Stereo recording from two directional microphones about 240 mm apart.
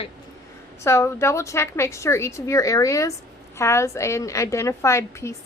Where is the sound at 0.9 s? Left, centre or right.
Centre.